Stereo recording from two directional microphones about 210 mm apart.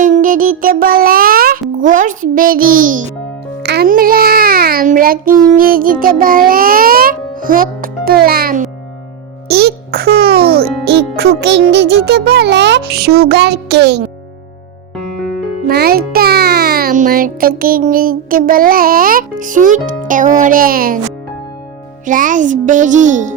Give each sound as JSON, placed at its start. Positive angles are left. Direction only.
{"t": 0.0, "sound": "music", "side_deg": -40}
{"t": 1.8, "sound": "a child's voice", "side_deg": -40}
{"t": 3.6, "sound": "a child's voice", "side_deg": -50}
{"t": 15.6, "sound": "a child's voice", "side_deg": -45}
{"t": 22.0, "sound": "a child's voice", "side_deg": -40}